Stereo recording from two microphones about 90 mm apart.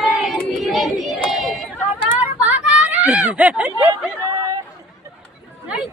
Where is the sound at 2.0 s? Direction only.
20° right (ahead or behind).